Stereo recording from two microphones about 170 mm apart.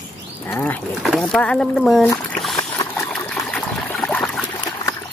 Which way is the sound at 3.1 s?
5° left (ahead or behind).